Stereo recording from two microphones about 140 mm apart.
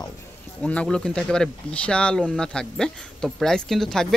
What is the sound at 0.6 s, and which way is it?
Speech, 10° left (ahead or behind).